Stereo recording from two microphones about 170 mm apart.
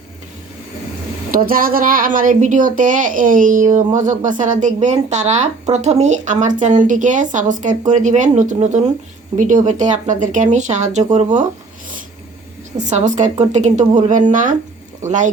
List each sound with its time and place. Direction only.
1.3 s speech: 55° right (ahead or behind)
12.8 s speech: 45° right (ahead or behind)